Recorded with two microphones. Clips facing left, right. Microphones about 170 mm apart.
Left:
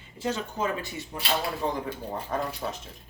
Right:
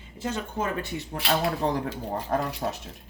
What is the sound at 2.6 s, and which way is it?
Speech, 40° right (ahead or behind).